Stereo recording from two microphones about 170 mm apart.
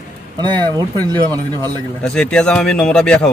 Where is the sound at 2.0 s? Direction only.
5° left (ahead or behind).